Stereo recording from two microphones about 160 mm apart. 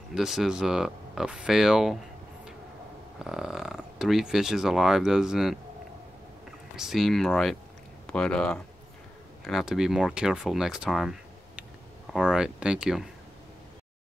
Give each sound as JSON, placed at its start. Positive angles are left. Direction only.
{"t": 0.1, "sound": "speech", "side_deg": -5}
{"t": 3.2, "sound": "speech", "side_deg": -5}
{"t": 6.8, "sound": "speech", "side_deg": 0}